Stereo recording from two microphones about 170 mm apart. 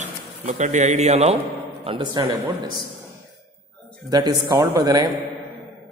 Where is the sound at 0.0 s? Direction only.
45° right (ahead or behind).